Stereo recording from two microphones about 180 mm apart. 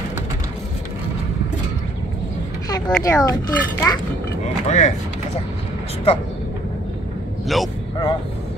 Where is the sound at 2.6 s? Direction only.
20° left (ahead or behind).